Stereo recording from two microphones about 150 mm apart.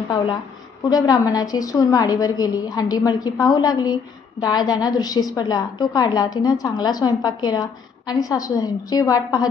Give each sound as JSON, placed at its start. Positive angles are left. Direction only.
{"t": 0.1, "sound": "a woman's voice", "side_deg": 30}